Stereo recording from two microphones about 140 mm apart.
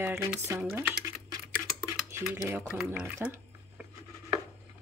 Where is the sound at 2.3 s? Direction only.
20° right (ahead or behind).